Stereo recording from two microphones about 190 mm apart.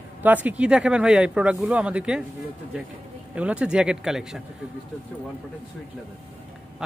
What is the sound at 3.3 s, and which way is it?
Speech, 5° right (ahead or behind).